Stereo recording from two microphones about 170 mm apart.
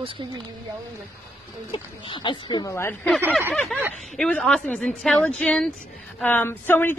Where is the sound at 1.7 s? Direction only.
30° left (ahead or behind).